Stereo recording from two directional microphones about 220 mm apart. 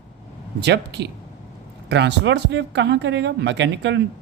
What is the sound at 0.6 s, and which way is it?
Speech, 50° right (ahead or behind).